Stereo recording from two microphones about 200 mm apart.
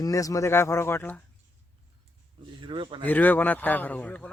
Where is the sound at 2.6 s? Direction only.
25° right (ahead or behind).